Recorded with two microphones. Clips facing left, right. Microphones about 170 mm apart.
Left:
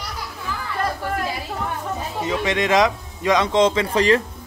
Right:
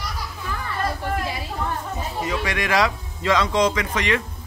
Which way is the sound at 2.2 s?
20° left (ahead or behind).